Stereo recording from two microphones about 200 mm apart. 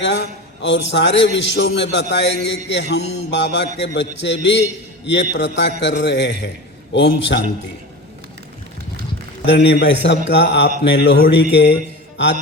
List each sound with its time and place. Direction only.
0.0 s a man's voice: 65° left (ahead or behind)
9.5 s a man's voice: 60° left (ahead or behind)